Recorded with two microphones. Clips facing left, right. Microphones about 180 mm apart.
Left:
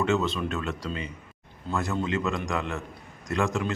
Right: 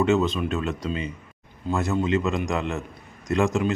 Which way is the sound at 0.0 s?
20° right (ahead or behind).